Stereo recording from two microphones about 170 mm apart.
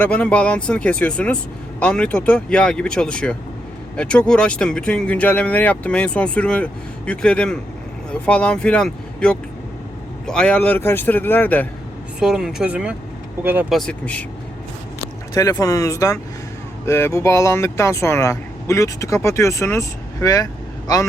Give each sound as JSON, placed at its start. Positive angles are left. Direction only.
{"t": 0.0, "sound": "speech", "side_deg": 10}
{"t": 12.2, "sound": "speech", "side_deg": 0}
{"t": 13.7, "sound": "speech", "side_deg": 5}
{"t": 15.4, "sound": "speech", "side_deg": 20}